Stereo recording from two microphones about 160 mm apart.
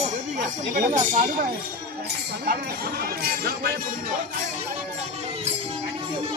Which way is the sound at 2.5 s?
75° right (ahead or behind).